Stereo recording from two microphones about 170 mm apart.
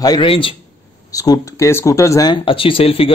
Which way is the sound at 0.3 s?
30° left (ahead or behind).